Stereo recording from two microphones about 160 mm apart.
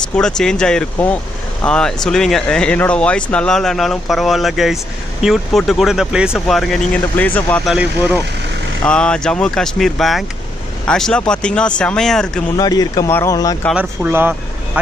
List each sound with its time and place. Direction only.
0.1 s speech: 5° left (ahead or behind)
7.6 s speech: 5° right (ahead or behind)
8.8 s speech: 5° left (ahead or behind)
12.5 s speech: 25° left (ahead or behind)
13.7 s speech: 10° right (ahead or behind)